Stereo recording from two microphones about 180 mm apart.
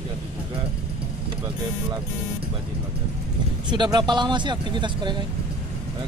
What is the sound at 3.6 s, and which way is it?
Speech, 25° right (ahead or behind).